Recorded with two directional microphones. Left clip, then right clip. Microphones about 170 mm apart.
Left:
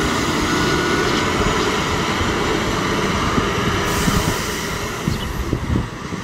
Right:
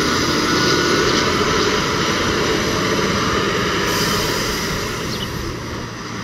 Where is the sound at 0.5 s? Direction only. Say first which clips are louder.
Right 3 dB; 35° left (ahead or behind).